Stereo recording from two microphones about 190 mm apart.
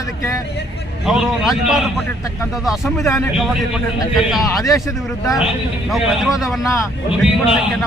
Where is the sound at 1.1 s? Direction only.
Centre (ahead or behind).